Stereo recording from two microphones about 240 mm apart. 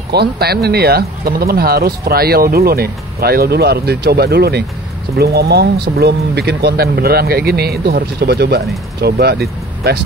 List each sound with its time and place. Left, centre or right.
0.1 s speech: right